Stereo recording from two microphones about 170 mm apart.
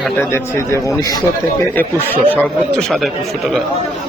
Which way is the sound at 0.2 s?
15° left (ahead or behind).